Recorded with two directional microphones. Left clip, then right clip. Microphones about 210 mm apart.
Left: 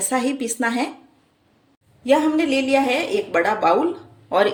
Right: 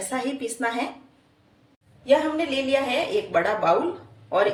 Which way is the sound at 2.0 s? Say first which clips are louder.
Left 3 dB; 55° left (ahead or behind).